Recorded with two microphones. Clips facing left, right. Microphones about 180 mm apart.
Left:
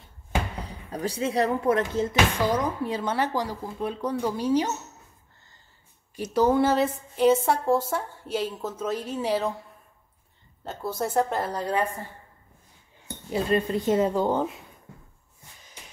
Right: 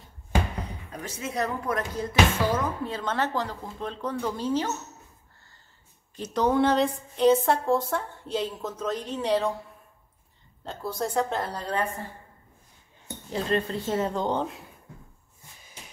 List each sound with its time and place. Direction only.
0.7 s speech: 35° left (ahead or behind)
2.4 s a woman's voice: 15° left (ahead or behind)
6.1 s a woman's voice: 10° left (ahead or behind)
10.6 s a woman's voice: 5° left (ahead or behind)
13.3 s a woman's voice: 10° left (ahead or behind)